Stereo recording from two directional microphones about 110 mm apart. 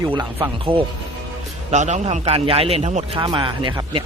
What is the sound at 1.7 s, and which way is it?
A man's voice, 90° right.